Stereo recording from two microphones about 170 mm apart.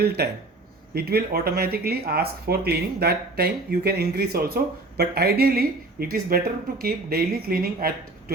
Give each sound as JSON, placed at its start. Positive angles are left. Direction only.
{"t": 0.0, "sound": "speech", "side_deg": -70}